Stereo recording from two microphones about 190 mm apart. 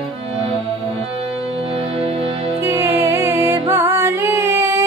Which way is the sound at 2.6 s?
15° right (ahead or behind).